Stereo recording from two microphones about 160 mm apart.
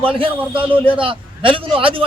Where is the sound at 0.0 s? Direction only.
35° right (ahead or behind).